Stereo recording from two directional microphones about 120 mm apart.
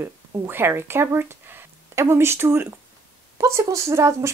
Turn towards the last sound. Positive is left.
turn(degrees=-25)  # may be behind; listen again after turning